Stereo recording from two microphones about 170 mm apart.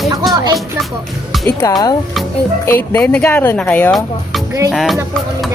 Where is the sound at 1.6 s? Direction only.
20° left (ahead or behind).